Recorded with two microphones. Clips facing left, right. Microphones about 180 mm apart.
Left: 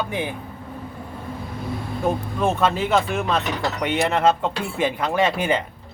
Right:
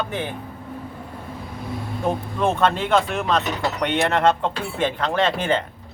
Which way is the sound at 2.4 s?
5° left (ahead or behind).